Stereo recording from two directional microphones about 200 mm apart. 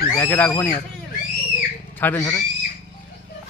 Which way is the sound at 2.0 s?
10° left (ahead or behind).